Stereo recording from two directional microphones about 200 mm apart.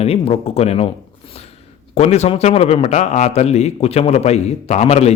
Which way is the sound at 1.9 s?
35° left (ahead or behind).